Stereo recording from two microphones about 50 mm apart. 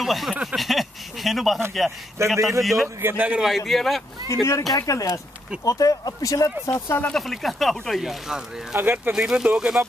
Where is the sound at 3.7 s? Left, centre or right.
Centre.